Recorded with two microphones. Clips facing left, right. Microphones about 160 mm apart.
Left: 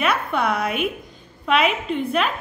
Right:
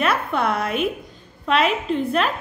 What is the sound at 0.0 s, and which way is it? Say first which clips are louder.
A woman's voice: right 1 dB; centre (ahead or behind).